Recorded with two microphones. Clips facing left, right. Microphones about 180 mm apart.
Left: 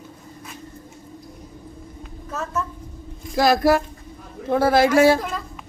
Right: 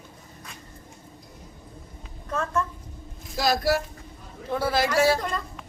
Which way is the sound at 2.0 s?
5° left (ahead or behind).